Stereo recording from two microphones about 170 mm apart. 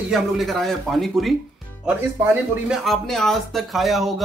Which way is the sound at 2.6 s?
Centre (ahead or behind).